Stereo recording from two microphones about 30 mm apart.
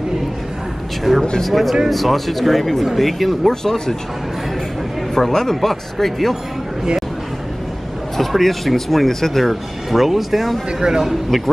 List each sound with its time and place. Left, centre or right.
1.1 s speech: centre
1.4 s speech: centre
3.4 s speech: centre
5.1 s speech: centre
8.2 s speech: centre
10.8 s speech: centre
11.2 s speech: centre